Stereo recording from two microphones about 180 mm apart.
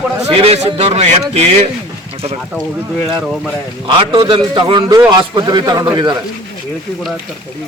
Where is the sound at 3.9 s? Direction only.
25° right (ahead or behind).